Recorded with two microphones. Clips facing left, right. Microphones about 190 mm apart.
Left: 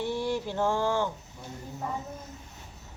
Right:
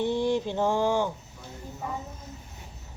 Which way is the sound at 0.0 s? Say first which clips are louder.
Right 4 dB; 20° right (ahead or behind).